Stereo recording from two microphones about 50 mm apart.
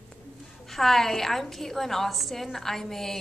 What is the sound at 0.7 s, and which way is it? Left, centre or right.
A woman's voice, centre.